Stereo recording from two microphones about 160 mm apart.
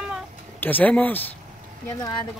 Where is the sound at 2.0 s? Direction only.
25° left (ahead or behind).